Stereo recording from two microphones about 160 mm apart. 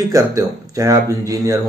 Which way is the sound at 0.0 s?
20° right (ahead or behind).